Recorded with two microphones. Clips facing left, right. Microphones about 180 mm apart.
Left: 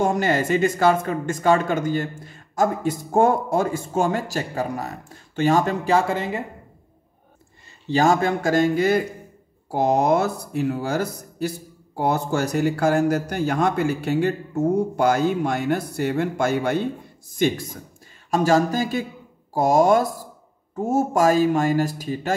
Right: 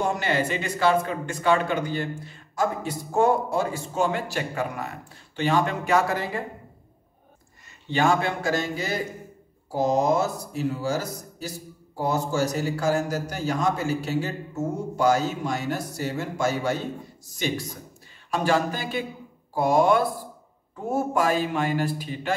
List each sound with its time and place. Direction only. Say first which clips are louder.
0.0 s speech: left 4 dB; 45° left (ahead or behind); by 6.4 s 25° left (ahead or behind)
7.9 s speech: left 4 dB; 40° left (ahead or behind); by 16.8 s 55° left (ahead or behind)
18.3 s speech: left 5 dB; 40° left (ahead or behind)